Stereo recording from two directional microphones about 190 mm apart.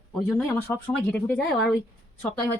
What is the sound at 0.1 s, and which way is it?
Speech, centre (ahead or behind).